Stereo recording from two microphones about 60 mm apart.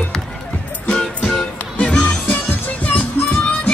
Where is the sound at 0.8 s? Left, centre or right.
Centre.